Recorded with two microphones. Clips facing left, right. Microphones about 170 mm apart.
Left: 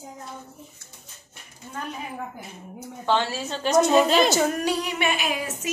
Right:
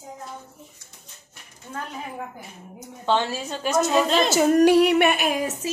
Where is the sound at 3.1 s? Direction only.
15° right (ahead or behind).